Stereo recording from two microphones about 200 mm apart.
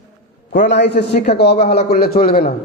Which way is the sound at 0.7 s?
60° left (ahead or behind).